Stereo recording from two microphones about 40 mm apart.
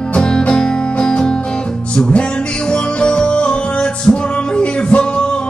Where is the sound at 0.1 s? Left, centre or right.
Left.